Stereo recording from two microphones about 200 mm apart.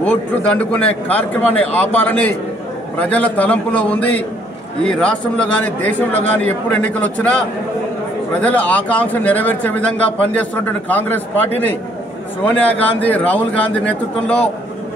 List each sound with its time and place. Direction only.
0.0 s a man's voice: 5° left (ahead or behind)
8.4 s speech: 5° left (ahead or behind)
12.4 s speech: 5° left (ahead or behind)